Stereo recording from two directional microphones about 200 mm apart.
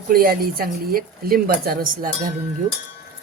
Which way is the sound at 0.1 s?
45° right (ahead or behind).